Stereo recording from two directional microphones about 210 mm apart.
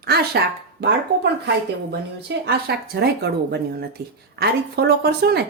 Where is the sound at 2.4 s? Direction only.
50° right (ahead or behind).